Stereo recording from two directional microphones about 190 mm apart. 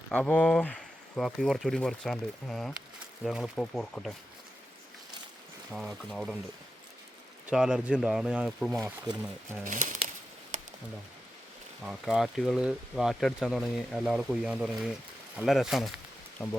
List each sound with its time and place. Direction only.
0.1 s speech: 5° left (ahead or behind)
5.7 s speech: centre (ahead or behind)
7.4 s speech: 5° right (ahead or behind)
8.8 s speech: 15° right (ahead or behind)
9.6 s speech: 45° right (ahead or behind)
11.8 s speech: centre (ahead or behind)